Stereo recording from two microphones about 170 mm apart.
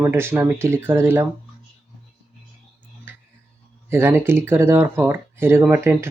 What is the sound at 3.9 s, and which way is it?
Speech, 15° right (ahead or behind).